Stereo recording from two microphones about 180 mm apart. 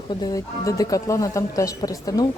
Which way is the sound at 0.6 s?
20° left (ahead or behind).